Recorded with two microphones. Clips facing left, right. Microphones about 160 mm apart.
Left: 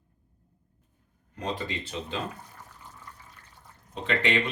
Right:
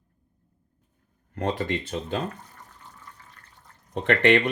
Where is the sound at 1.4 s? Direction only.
55° right (ahead or behind).